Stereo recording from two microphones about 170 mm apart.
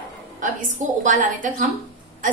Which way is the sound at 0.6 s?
45° right (ahead or behind).